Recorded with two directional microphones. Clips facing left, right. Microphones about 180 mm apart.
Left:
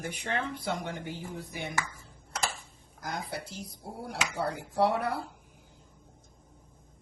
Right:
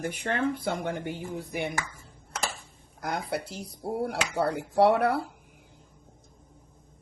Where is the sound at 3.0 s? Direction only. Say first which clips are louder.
Right 6 dB; 65° right (ahead or behind).